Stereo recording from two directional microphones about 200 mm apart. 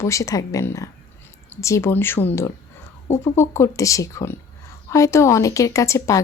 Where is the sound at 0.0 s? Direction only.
15° left (ahead or behind).